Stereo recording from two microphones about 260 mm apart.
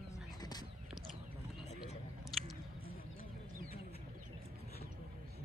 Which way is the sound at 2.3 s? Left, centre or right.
Centre.